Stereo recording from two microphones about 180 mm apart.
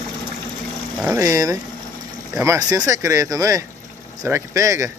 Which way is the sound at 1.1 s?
15° right (ahead or behind).